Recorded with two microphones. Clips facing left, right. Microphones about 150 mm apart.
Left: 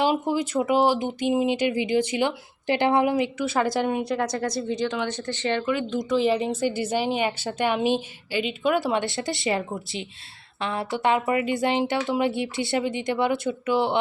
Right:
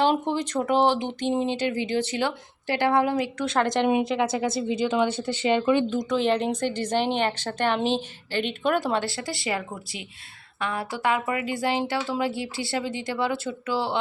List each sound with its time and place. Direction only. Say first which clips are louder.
0.0 s a woman's voice: even; 10° left (ahead or behind)
3.3 s speech: even; 5° left (ahead or behind); by 5.6 s 15° right (ahead or behind)
6.0 s a woman's voice: left 1 dB; 5° left (ahead or behind); by 14.0 s 20° left (ahead or behind)